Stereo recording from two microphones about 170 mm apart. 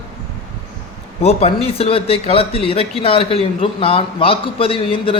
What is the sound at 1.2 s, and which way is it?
Speech, 35° left (ahead or behind).